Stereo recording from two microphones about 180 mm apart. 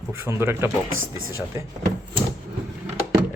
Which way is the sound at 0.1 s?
15° right (ahead or behind).